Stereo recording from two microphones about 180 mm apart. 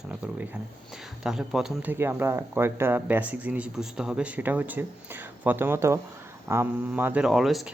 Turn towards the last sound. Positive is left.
turn(degrees=0)  # may be behind; listen again after turning